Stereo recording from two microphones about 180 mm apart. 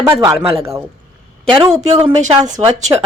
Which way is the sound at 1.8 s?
35° right (ahead or behind).